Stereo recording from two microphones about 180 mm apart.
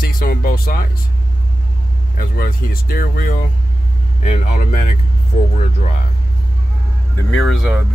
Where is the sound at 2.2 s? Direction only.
55° left (ahead or behind).